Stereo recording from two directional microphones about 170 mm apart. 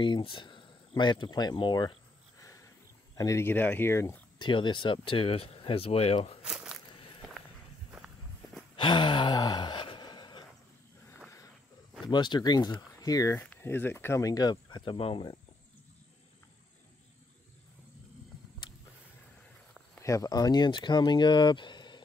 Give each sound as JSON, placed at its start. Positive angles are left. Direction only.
{"t": 0.0, "sound": "speech", "side_deg": 30}
{"t": 3.2, "sound": "speech", "side_deg": 15}
{"t": 4.4, "sound": "speech", "side_deg": 30}
{"t": 6.4, "sound": "a sound", "side_deg": -5}
{"t": 8.7, "sound": "gasp", "side_deg": 25}
{"t": 12.1, "sound": "speech", "side_deg": 25}
{"t": 20.0, "sound": "speech", "side_deg": 20}